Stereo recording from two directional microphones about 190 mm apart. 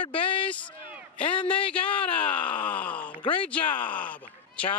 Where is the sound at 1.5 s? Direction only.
5° left (ahead or behind).